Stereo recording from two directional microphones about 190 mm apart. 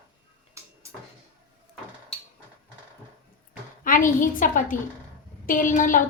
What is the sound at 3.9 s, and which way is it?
Speech, 45° left (ahead or behind).